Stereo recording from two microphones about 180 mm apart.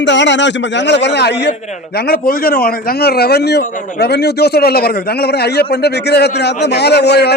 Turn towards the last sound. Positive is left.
turn(degrees=65)  # may be behind; listen again after turning